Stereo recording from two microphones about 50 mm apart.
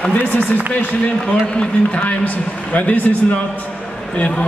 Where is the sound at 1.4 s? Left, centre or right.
Left.